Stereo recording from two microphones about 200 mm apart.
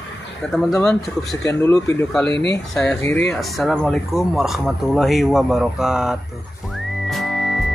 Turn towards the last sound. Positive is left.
turn(degrees=0)  # may be behind; listen again after turning